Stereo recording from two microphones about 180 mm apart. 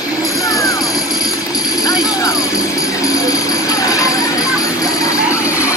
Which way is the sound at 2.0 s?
20° left (ahead or behind).